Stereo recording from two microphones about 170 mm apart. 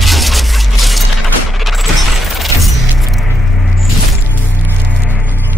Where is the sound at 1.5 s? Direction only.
Centre (ahead or behind).